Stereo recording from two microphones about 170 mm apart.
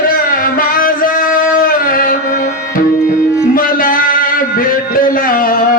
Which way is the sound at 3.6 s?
55° left (ahead or behind).